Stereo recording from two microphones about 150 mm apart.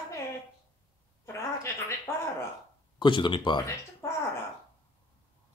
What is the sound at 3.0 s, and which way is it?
Speech, 35° left (ahead or behind).